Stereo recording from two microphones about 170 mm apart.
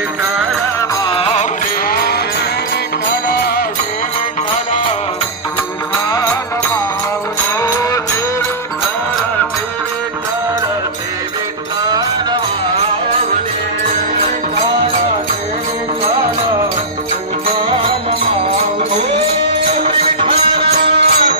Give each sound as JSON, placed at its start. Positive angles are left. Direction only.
{"t": 0.7, "sound": "music", "side_deg": 25}
{"t": 1.9, "sound": "music", "side_deg": 65}
{"t": 3.3, "sound": "music", "side_deg": 65}
{"t": 7.6, "sound": "music", "side_deg": 20}
{"t": 17.6, "sound": "music", "side_deg": -30}
{"t": 19.7, "sound": "music", "side_deg": -40}
{"t": 20.8, "sound": "music", "side_deg": -80}